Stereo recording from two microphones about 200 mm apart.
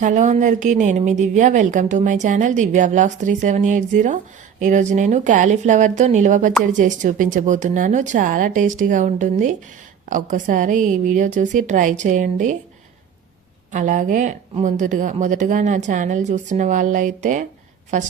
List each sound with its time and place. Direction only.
0.0 s speech: 40° right (ahead or behind)
13.7 s speech: 40° right (ahead or behind)